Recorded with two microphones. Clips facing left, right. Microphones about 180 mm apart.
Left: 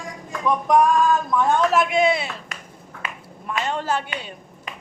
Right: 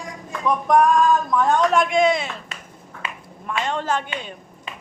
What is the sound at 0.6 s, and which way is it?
A woman's voice, centre (ahead or behind).